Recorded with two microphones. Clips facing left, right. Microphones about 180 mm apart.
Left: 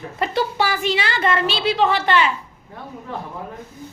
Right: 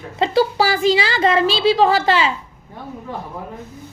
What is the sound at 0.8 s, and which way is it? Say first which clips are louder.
A woman's voice: right 5 dB; 90° right.